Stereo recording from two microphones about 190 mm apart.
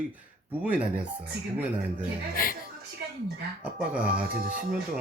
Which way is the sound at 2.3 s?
50° left (ahead or behind).